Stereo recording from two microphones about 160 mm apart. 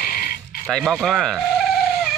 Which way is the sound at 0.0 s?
65° left (ahead or behind).